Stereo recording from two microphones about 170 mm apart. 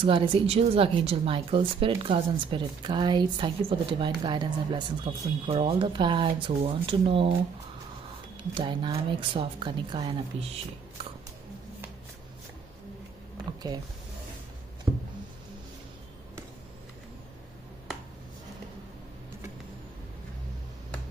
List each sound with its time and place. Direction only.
0.0 s a woman's voice: 30° right (ahead or behind)
8.5 s a woman's voice: 30° right (ahead or behind)
14.9 s a woman's voice: 25° right (ahead or behind)